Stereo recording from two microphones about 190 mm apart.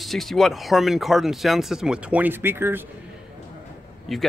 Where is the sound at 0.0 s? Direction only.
Centre (ahead or behind).